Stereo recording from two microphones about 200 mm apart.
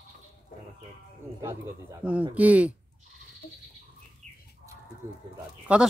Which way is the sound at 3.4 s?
45° left (ahead or behind).